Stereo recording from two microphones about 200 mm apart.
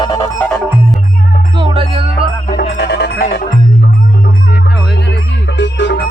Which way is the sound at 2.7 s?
55° left (ahead or behind).